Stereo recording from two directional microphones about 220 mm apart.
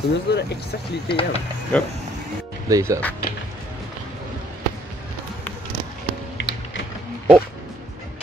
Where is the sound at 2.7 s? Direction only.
15° right (ahead or behind).